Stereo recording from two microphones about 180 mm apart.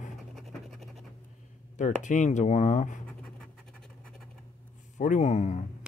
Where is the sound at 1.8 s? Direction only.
45° left (ahead or behind).